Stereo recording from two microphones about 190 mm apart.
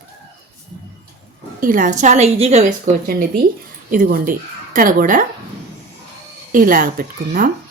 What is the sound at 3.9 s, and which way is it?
Speech, 45° right (ahead or behind).